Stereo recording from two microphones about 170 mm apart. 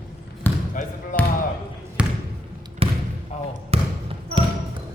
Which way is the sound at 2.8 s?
35° right (ahead or behind).